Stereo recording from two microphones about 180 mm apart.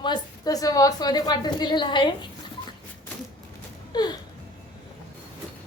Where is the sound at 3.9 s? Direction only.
25° left (ahead or behind).